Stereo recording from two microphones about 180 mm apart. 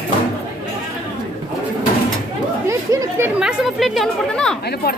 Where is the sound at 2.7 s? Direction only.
15° right (ahead or behind); by 4.6 s 5° left (ahead or behind).